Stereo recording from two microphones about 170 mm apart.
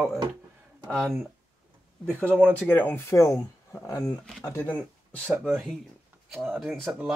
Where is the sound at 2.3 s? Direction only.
10° right (ahead or behind).